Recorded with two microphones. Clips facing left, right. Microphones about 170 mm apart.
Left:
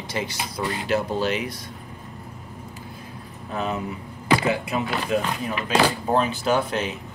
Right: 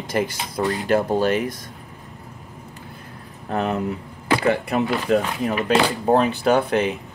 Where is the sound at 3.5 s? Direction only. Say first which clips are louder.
Right 5 dB; 65° right (ahead or behind).